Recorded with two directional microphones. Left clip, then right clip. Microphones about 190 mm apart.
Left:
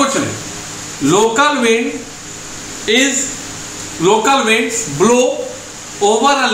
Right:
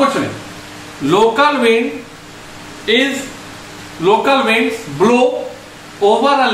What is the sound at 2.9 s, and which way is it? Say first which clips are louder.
Speech: left 1 dB; 5° left (ahead or behind).